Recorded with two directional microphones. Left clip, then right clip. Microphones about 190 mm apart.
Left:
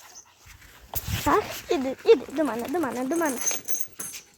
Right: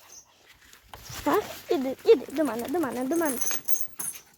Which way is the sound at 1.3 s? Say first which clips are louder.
Left 2 dB; centre (ahead or behind).